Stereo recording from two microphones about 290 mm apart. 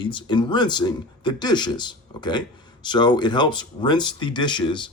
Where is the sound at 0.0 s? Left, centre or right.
Centre.